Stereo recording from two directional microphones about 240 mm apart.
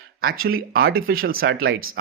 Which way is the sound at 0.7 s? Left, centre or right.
Right.